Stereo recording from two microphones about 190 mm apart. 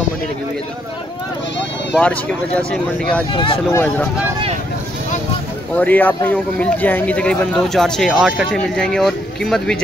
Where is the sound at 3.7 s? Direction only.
15° left (ahead or behind).